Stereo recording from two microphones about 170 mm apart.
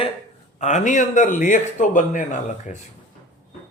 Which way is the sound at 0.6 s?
45° left (ahead or behind).